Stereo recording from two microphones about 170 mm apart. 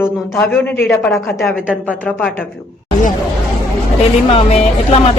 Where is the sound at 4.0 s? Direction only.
35° left (ahead or behind).